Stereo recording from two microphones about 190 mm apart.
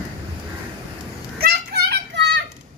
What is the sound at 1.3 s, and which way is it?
Children playing, 55° right (ahead or behind).